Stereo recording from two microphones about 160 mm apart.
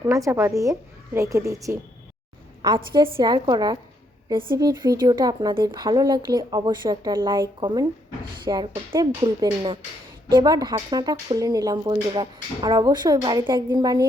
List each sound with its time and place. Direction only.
0.0 s speech: 20° right (ahead or behind)